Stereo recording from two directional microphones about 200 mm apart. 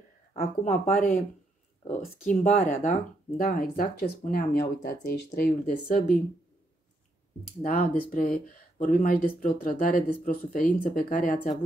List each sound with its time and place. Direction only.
0.3 s speech: 35° left (ahead or behind)
7.6 s speech: 45° left (ahead or behind)